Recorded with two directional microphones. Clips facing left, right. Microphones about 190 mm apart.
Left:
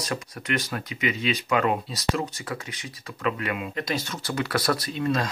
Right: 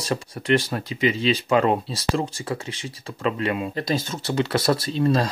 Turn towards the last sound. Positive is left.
turn(degrees=-30)  # may be behind; listen again after turning